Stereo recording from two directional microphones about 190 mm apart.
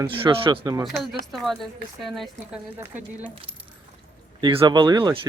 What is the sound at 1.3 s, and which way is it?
A woman's voice, centre (ahead or behind).